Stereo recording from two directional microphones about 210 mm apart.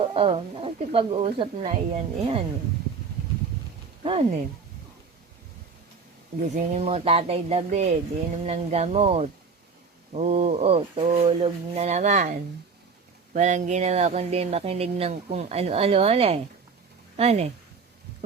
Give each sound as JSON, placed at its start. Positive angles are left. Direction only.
{"t": 0.0, "sound": "speech", "side_deg": -25}
{"t": 4.0, "sound": "speech", "side_deg": -30}
{"t": 6.6, "sound": "speech", "side_deg": -30}